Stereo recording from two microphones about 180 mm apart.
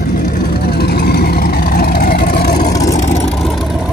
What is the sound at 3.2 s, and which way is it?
Vehicle, centre (ahead or behind).